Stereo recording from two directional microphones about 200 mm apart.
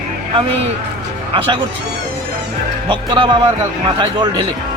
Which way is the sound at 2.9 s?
25° right (ahead or behind).